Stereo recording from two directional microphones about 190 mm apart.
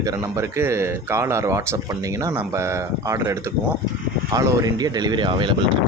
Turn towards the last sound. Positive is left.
turn(degrees=-25)  # may be behind; listen again after turning